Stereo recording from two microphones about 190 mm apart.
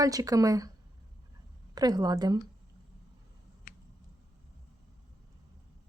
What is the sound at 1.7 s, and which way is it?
Speech, 20° right (ahead or behind).